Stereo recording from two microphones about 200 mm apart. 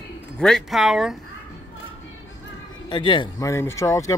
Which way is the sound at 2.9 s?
25° left (ahead or behind).